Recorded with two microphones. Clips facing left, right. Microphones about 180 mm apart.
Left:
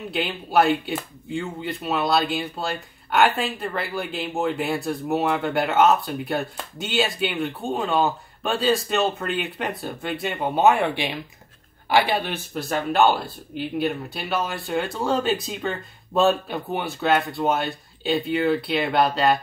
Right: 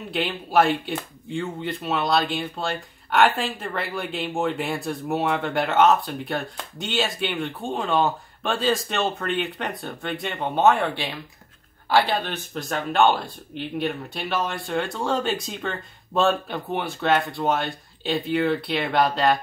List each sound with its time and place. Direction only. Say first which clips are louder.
0.1 s speech: even; centre (ahead or behind)